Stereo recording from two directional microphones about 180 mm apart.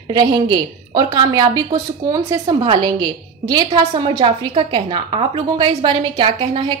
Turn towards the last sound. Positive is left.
turn(degrees=-25)  # may be behind; listen again after turning